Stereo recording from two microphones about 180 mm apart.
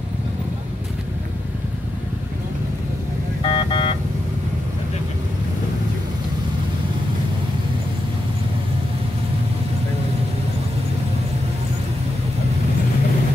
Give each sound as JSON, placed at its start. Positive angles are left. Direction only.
{"t": 3.4, "sound": "vehicle", "side_deg": 30}